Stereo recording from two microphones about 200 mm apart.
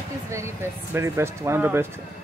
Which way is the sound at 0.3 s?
15° right (ahead or behind).